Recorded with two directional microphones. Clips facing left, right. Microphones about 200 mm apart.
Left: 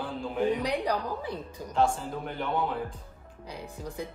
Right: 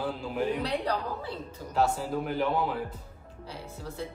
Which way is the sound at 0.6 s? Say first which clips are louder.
Left 1 dB; 10° left (ahead or behind).